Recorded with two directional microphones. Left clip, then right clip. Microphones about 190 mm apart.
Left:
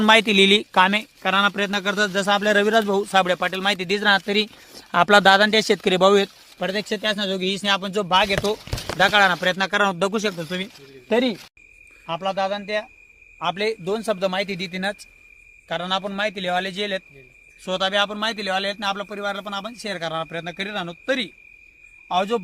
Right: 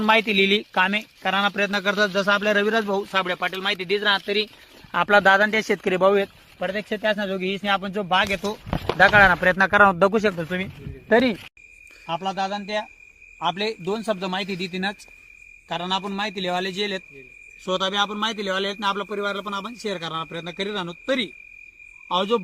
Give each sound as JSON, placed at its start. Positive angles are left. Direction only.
{"t": 0.0, "sound": "speech", "side_deg": 50}
{"t": 3.1, "sound": "speech", "side_deg": 50}
{"t": 4.9, "sound": "speech", "side_deg": 40}
{"t": 9.0, "sound": "speech", "side_deg": 0}
{"t": 12.0, "sound": "speech", "side_deg": 25}
{"t": 18.1, "sound": "speech", "side_deg": 30}